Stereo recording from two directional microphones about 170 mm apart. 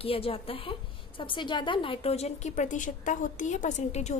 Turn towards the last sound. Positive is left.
turn(degrees=40)  # may be behind; listen again after turning